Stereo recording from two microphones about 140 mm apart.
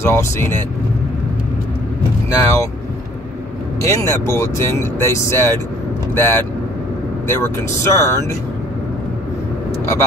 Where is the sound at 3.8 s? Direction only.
20° left (ahead or behind).